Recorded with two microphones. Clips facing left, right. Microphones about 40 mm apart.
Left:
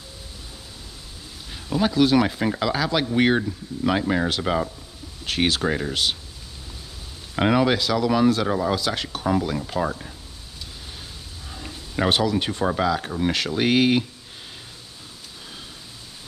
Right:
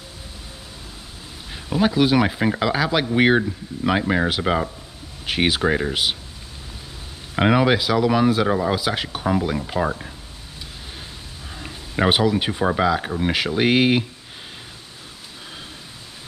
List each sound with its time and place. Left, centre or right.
1.5 s speech: centre
7.3 s speech: centre
11.5 s speech: centre